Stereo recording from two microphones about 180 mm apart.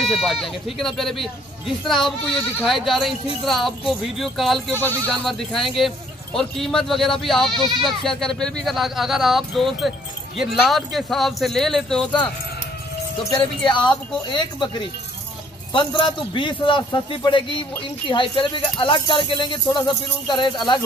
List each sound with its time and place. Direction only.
0.0 s speech: centre (ahead or behind)
7.5 s speech: 25° right (ahead or behind)
7.8 s speech: centre (ahead or behind)
13.7 s a man's voice: 25° left (ahead or behind)